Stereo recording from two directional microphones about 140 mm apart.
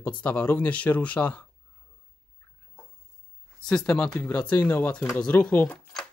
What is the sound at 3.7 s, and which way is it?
Speech, 5° left (ahead or behind).